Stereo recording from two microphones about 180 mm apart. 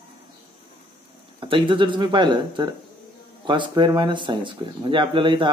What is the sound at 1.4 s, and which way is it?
Speech, 30° right (ahead or behind).